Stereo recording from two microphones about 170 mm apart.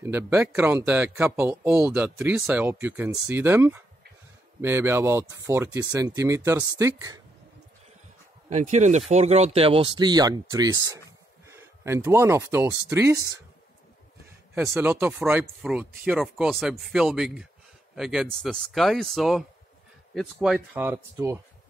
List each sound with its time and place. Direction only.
0.0 s speech: 15° right (ahead or behind)
8.5 s speech: 45° right (ahead or behind); by 13.2 s 15° right (ahead or behind)
14.7 s speech: 10° right (ahead or behind)